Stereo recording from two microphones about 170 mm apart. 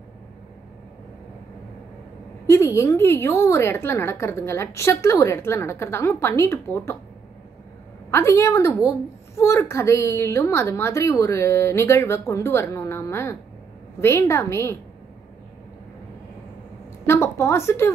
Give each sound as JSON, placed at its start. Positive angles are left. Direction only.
{"t": 2.4, "sound": "a woman's voice", "side_deg": 15}
{"t": 8.1, "sound": "a woman's voice", "side_deg": 15}
{"t": 17.0, "sound": "a woman's voice", "side_deg": 15}